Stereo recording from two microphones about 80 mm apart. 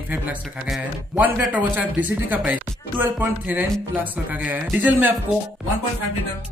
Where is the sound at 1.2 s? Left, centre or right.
Centre.